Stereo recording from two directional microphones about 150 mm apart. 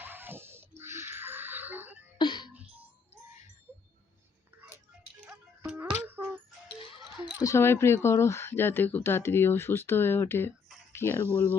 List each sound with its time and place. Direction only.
0.0 s a sound: 15° right (ahead or behind)
2.1 s music: 30° left (ahead or behind)
5.3 s music: 5° right (ahead or behind)
7.3 s speech: 20° left (ahead or behind)